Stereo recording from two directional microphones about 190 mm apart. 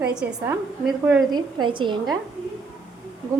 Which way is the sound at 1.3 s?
25° right (ahead or behind).